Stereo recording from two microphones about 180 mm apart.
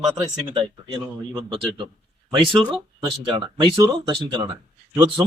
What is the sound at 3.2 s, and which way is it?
Speech, 25° right (ahead or behind).